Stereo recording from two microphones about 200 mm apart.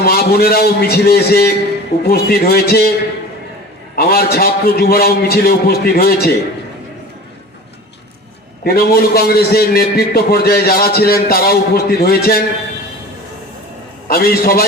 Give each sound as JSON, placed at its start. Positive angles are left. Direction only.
{"t": 0.0, "sound": "a man's voice", "side_deg": 50}
{"t": 3.9, "sound": "a man's voice", "side_deg": 50}
{"t": 8.6, "sound": "a man's voice", "side_deg": 50}
{"t": 14.1, "sound": "a man's voice", "side_deg": 50}